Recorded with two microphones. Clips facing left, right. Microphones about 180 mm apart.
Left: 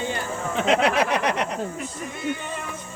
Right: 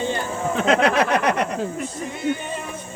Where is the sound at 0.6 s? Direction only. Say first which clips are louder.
Right 2 dB; 50° right (ahead or behind).